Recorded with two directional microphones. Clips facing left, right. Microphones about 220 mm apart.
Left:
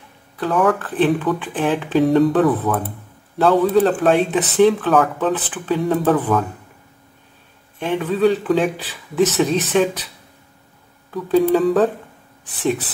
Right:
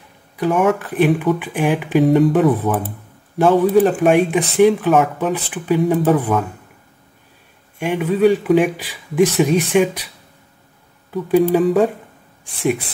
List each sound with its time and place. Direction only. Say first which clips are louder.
0.4 s speech: right 2 dB; 15° right (ahead or behind)
7.8 s speech: right 2 dB; 15° right (ahead or behind)
11.1 s speech: right 1 dB; 15° right (ahead or behind)